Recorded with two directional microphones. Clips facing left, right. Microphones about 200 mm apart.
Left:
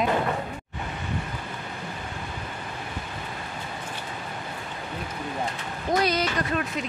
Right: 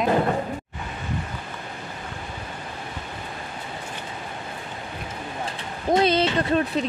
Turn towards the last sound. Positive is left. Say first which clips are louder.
# right 6 dB
turn(degrees=-30)  # may be behind; listen again after turning